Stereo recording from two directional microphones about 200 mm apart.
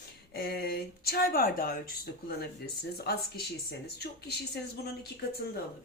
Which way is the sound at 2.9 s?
55° left (ahead or behind).